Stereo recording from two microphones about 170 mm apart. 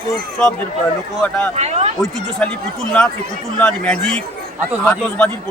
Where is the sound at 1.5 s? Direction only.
40° right (ahead or behind).